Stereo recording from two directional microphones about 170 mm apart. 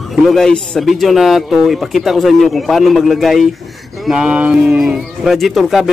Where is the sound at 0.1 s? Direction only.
Centre (ahead or behind).